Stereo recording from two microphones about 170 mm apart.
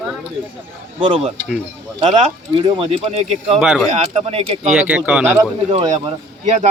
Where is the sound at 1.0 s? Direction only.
30° right (ahead or behind).